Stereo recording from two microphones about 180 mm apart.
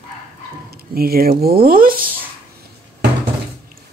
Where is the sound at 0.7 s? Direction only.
55° right (ahead or behind).